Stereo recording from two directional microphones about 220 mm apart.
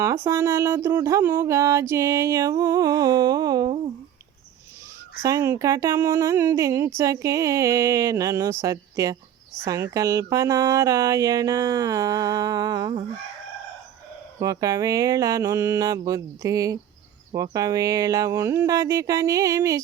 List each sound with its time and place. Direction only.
0.0 s speech: 15° right (ahead or behind)
5.2 s speech: 15° right (ahead or behind)
14.3 s speech: 15° right (ahead or behind)